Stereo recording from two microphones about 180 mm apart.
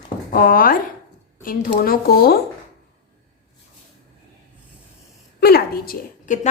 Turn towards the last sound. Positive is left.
turn(degrees=45)  # may be behind; listen again after turning